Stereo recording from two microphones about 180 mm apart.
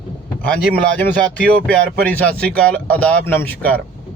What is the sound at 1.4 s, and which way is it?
Speech, 5° left (ahead or behind).